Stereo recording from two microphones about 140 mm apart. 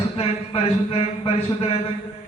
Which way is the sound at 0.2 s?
45° left (ahead or behind).